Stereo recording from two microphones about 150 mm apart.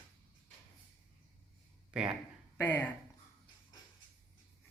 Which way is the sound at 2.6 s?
15° left (ahead or behind).